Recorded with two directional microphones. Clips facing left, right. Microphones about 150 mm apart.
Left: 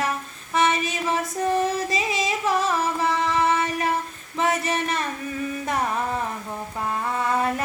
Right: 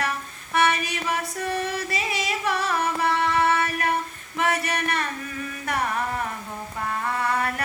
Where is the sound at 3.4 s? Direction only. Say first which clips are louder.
Left 1 dB; 20° left (ahead or behind).